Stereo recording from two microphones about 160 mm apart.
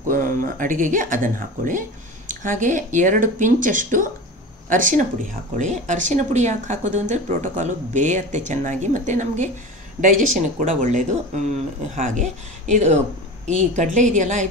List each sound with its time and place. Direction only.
0.0 s speech: 60° right (ahead or behind)